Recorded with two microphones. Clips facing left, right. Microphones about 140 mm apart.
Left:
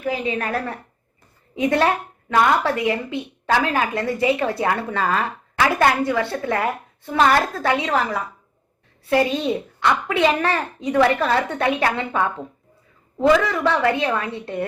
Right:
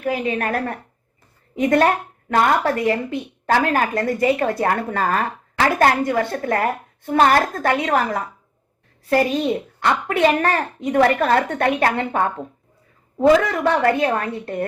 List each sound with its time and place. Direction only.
0.0 s a woman's voice: 50° right (ahead or behind)
2.3 s a woman's voice: 45° right (ahead or behind)